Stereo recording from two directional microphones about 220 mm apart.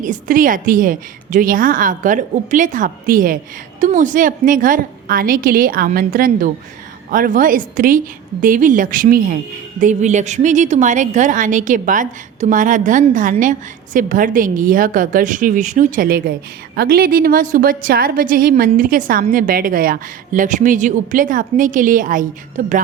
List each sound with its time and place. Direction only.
0.0 s a woman's voice: 35° right (ahead or behind)